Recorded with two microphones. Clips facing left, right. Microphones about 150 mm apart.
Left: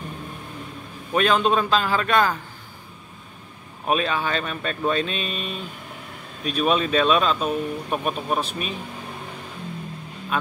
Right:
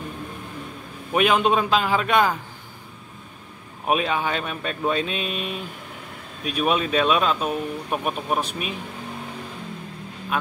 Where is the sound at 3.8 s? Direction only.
10° right (ahead or behind).